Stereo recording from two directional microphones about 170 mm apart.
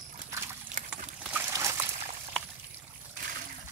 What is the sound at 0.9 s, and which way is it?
Boat, 5° right (ahead or behind).